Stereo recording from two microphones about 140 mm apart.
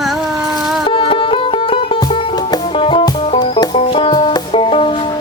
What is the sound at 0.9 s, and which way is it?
Music, 40° left (ahead or behind).